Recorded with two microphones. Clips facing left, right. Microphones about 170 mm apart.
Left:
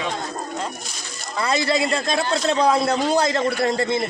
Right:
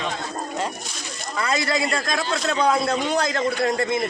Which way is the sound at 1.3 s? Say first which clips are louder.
Left 3 dB; 30° left (ahead or behind).